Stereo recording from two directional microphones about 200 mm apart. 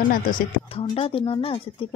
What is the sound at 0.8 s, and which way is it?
Speech, 30° left (ahead or behind).